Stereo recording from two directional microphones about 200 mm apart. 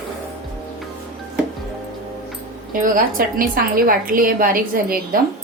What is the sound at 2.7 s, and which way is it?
A woman's voice, 40° right (ahead or behind).